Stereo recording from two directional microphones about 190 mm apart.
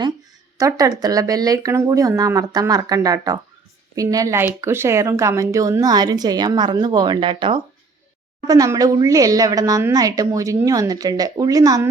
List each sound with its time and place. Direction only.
0.6 s speech: 20° right (ahead or behind)